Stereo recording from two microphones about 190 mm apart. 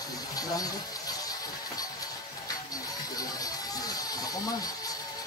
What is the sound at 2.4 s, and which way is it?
Music, 20° left (ahead or behind).